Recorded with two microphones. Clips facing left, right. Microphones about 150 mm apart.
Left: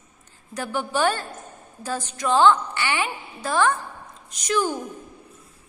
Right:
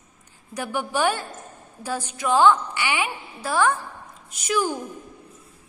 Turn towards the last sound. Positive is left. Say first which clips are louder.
# even
turn(degrees=-10)  # may be behind; listen again after turning